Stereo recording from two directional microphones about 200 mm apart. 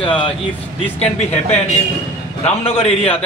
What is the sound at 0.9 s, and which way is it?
A man's voice, 30° left (ahead or behind).